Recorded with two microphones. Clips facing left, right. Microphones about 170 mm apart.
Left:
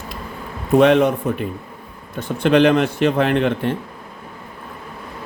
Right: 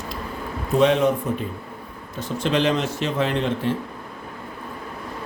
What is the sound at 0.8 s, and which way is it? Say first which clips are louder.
A man's voice: left 4 dB; 65° left (ahead or behind).